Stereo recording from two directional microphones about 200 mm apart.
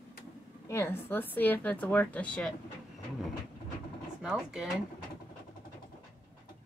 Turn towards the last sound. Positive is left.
turn(degrees=0)  # may be behind; listen again after turning